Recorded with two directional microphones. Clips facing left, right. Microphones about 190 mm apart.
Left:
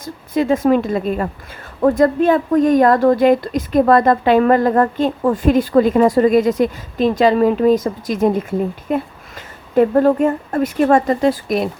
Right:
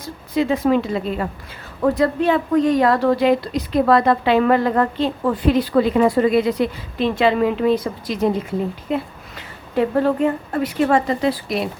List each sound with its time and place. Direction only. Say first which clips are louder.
0.0 s a woman's voice: left 2 dB; 45° left (ahead or behind)